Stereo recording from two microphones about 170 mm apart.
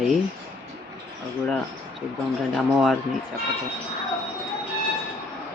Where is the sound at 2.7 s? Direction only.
5° right (ahead or behind).